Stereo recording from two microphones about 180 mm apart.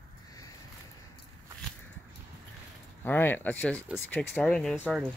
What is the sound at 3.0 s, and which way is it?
Speech, 10° left (ahead or behind).